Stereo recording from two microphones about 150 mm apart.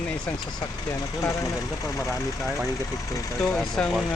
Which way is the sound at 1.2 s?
20° left (ahead or behind).